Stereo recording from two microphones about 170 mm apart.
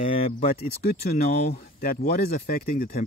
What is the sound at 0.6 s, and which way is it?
Speech, 65° left (ahead or behind).